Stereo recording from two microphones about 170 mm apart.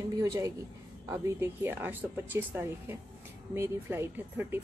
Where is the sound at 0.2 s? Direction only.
20° right (ahead or behind).